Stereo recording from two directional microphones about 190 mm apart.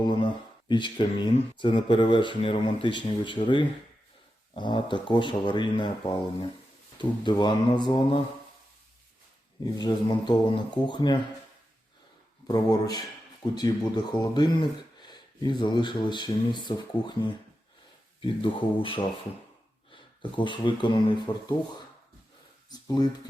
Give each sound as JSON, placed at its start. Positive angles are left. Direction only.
{"t": 0.0, "sound": "speech", "side_deg": 25}
{"t": 7.0, "sound": "speech", "side_deg": 25}
{"t": 9.7, "sound": "speech", "side_deg": 20}
{"t": 12.5, "sound": "speech", "side_deg": 20}
{"t": 18.2, "sound": "speech", "side_deg": 25}
{"t": 22.7, "sound": "speech", "side_deg": 20}